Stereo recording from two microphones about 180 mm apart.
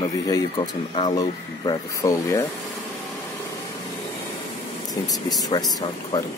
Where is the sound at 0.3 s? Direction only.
25° left (ahead or behind).